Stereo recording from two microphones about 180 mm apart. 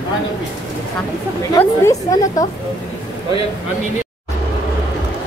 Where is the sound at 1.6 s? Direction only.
20° left (ahead or behind).